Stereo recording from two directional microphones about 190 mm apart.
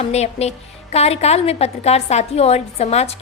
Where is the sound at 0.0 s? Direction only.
35° left (ahead or behind).